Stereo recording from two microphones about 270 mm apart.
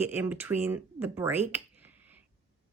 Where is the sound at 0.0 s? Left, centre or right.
Centre.